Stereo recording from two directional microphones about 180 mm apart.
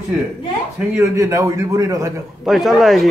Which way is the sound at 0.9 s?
15° right (ahead or behind).